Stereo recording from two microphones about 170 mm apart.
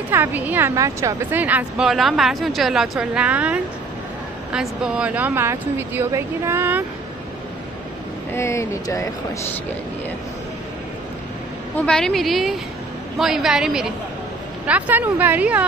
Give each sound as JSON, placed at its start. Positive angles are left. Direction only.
{"t": 0.1, "sound": "a woman's voice", "side_deg": -10}
{"t": 8.3, "sound": "speech", "side_deg": 15}
{"t": 11.7, "sound": "a woman's voice", "side_deg": 5}